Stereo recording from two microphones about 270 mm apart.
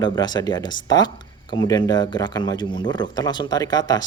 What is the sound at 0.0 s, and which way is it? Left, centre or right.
Speech, centre.